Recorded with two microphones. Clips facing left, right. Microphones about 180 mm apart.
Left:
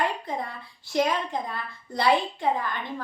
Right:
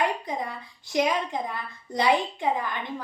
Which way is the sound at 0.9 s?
15° right (ahead or behind).